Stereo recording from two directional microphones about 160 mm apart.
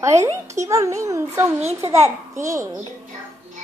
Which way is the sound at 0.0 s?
20° right (ahead or behind).